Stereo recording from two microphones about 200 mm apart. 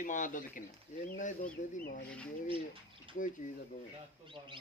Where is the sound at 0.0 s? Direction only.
40° left (ahead or behind).